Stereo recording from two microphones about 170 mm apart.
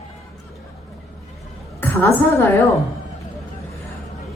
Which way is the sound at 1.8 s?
10° left (ahead or behind).